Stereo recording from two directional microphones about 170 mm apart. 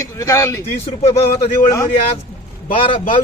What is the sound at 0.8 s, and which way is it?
Speech, 35° left (ahead or behind).